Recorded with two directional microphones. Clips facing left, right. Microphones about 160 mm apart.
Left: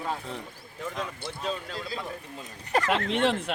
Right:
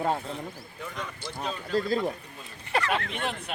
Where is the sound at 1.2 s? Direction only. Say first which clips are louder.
Left 1 dB; 60° left (ahead or behind).